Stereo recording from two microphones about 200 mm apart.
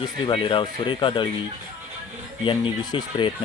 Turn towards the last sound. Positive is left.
turn(degrees=25)  # may be behind; listen again after turning